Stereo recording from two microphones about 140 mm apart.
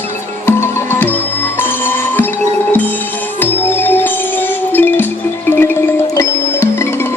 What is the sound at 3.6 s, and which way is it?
Music, 15° left (ahead or behind).